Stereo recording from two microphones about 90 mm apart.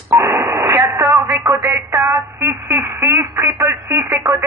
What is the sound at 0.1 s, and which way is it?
Radio, 30° right (ahead or behind).